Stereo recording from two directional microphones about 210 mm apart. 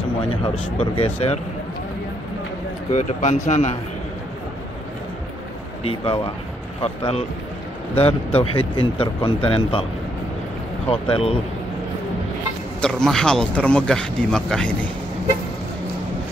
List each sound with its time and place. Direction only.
0.4 s speech: 25° left (ahead or behind)
2.9 s speech: 35° left (ahead or behind)
5.9 s speech: 25° left (ahead or behind)
10.9 s speech: 25° left (ahead or behind)
12.8 s speech: 5° left (ahead or behind)